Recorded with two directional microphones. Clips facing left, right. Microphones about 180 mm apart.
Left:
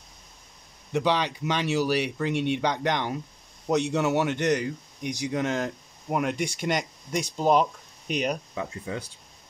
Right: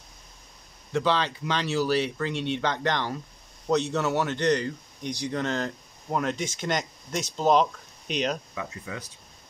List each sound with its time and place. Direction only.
0.9 s speech: 15° left (ahead or behind)
8.5 s speech: 30° left (ahead or behind)